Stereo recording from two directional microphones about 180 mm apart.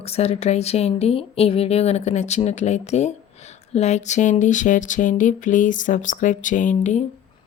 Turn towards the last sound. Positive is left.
turn(degrees=40)  # may be behind; listen again after turning